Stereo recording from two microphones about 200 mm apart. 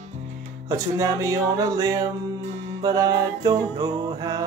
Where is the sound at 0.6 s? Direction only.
15° right (ahead or behind).